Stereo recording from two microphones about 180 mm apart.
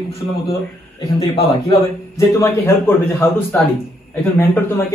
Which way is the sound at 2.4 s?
15° left (ahead or behind).